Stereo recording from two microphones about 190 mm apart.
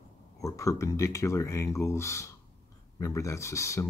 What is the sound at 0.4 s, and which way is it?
Speech, 15° left (ahead or behind).